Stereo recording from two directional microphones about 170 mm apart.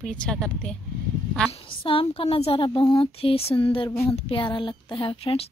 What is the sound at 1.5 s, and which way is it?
A woman's voice, 30° left (ahead or behind).